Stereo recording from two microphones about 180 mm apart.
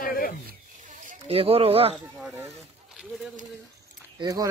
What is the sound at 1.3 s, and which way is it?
Speech, 30° right (ahead or behind).